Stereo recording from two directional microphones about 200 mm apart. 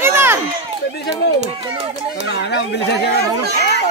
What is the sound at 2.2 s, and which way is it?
Speech, 60° left (ahead or behind).